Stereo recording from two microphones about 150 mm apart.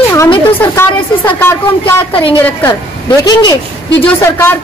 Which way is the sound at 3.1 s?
25° left (ahead or behind).